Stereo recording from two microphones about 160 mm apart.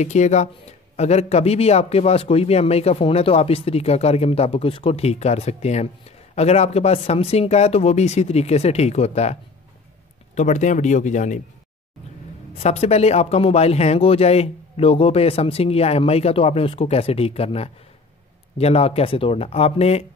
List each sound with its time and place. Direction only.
0.0 s speech: 45° left (ahead or behind)
12.5 s speech: 40° left (ahead or behind)